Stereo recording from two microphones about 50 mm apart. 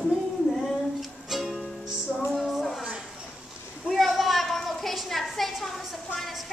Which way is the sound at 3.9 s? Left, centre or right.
Centre.